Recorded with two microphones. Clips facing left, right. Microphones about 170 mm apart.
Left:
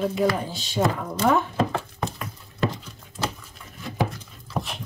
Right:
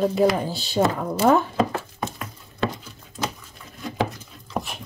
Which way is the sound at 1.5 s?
5° right (ahead or behind).